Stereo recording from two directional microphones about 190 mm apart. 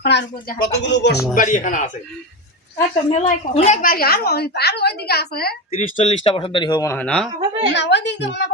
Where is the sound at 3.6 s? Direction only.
45° left (ahead or behind).